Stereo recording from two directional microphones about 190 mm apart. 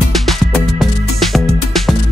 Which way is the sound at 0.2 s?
Centre (ahead or behind).